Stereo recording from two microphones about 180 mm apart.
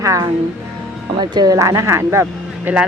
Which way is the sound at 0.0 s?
15° right (ahead or behind).